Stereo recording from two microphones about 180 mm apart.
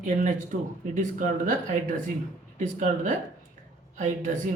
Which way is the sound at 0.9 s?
45° right (ahead or behind).